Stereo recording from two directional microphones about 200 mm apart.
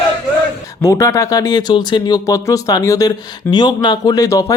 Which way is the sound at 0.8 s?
15° left (ahead or behind).